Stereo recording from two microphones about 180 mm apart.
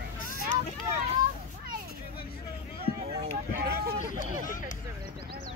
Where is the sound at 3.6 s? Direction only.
60° right (ahead or behind).